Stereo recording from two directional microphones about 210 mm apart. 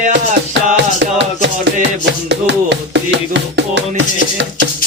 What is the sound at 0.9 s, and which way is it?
Music, 60° right (ahead or behind).